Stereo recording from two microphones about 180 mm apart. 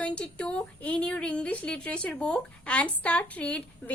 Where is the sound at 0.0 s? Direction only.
5° left (ahead or behind).